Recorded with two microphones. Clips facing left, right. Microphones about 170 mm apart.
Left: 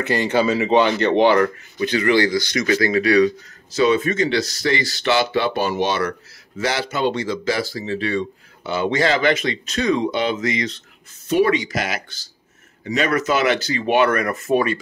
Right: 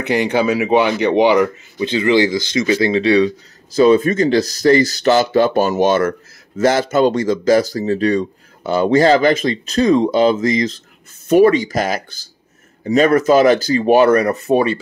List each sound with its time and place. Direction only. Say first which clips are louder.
0.0 s speech: right 3 dB; 15° right (ahead or behind)
3.7 s speech: right 6 dB; 35° right (ahead or behind)